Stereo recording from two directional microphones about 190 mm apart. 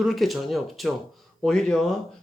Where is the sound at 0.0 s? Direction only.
Centre (ahead or behind).